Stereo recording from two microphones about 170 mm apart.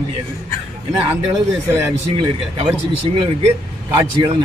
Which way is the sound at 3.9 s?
25° right (ahead or behind).